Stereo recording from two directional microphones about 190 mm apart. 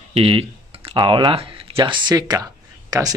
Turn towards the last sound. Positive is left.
turn(degrees=-20)  # may be behind; listen again after turning